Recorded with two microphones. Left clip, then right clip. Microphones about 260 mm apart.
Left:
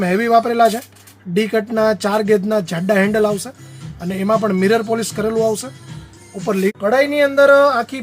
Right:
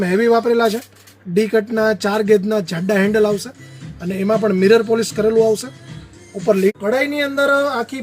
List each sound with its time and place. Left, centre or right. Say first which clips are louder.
0.0 s speech: left 1 dB; left
6.5 s speech: right 1 dB; centre